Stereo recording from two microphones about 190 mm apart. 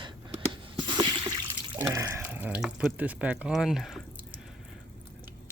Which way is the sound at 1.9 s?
15° right (ahead or behind).